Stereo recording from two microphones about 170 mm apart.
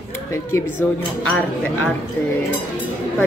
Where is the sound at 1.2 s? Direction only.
10° left (ahead or behind).